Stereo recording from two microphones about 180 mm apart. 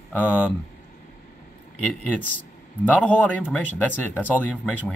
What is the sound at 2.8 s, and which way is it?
Speech, 10° left (ahead or behind).